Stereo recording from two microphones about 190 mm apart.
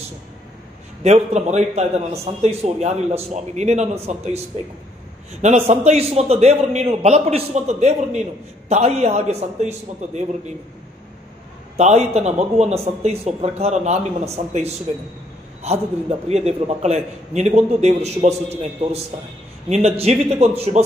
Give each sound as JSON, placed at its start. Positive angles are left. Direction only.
{"t": 1.0, "sound": "speech", "side_deg": -35}
{"t": 5.7, "sound": "speech", "side_deg": -35}
{"t": 11.7, "sound": "speech", "side_deg": -35}
{"t": 16.3, "sound": "speech", "side_deg": -35}